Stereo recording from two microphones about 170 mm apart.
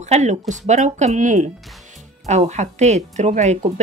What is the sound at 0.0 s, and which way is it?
Speech, 40° right (ahead or behind).